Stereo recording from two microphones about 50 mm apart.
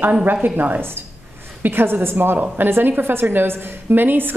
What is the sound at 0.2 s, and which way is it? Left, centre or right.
A woman's voice, right.